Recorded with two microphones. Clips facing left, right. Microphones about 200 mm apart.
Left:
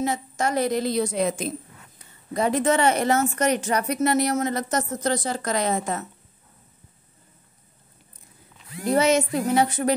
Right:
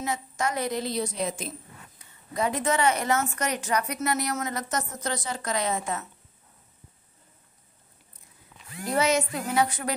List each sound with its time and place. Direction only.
0.0 s a woman's voice: 30° left (ahead or behind); by 1.5 s 60° left (ahead or behind)
2.0 s a woman's voice: 35° left (ahead or behind)
8.9 s speech: 25° left (ahead or behind)